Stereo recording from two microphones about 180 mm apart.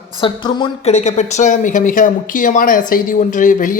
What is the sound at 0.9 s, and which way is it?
Speech, 40° left (ahead or behind).